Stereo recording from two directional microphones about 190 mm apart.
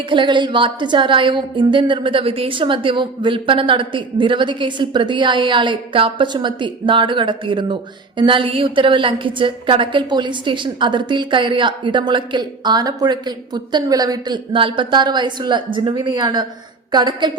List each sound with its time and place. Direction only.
0.1 s a woman's voice: 25° right (ahead or behind)